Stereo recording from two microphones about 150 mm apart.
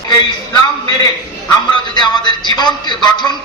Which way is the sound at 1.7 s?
30° left (ahead or behind).